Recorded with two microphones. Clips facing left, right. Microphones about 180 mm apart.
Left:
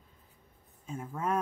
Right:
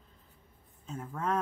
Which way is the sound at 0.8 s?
10° left (ahead or behind).